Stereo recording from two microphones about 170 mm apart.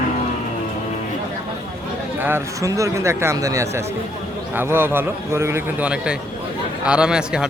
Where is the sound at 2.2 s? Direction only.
15° right (ahead or behind).